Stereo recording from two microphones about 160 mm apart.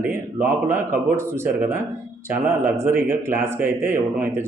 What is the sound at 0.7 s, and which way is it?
Speech, 15° right (ahead or behind).